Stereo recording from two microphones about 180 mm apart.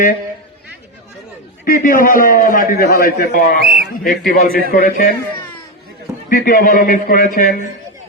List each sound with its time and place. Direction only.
1.6 s a man's voice: 50° left (ahead or behind)
3.6 s a sound: 60° right (ahead or behind)
4.0 s a man's voice: 50° left (ahead or behind)
6.2 s a man's voice: 50° left (ahead or behind)